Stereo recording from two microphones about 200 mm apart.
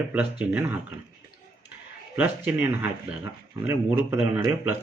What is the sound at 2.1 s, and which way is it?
Speech, 10° right (ahead or behind).